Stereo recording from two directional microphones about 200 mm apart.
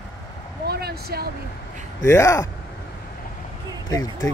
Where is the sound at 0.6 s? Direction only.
50° right (ahead or behind).